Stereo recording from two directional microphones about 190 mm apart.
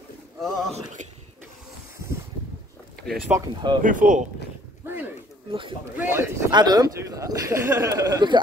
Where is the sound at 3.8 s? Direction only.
45° right (ahead or behind).